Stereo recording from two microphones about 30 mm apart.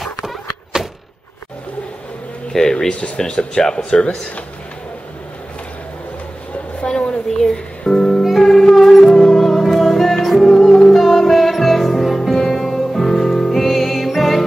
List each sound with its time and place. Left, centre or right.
0.7 s a sound: right
2.5 s speech: centre
3.5 s speech: left
6.8 s a sound: left
7.2 s speech: centre
8.2 s music: centre